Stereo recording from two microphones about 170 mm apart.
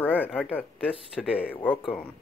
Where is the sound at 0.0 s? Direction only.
10° left (ahead or behind).